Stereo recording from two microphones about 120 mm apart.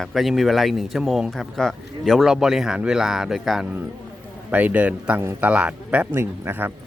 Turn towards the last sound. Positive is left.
turn(degrees=-20)  # may be behind; listen again after turning